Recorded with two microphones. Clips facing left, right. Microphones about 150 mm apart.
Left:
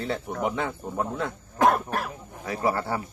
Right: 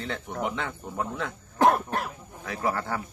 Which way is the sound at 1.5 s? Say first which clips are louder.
Even; 25° right (ahead or behind).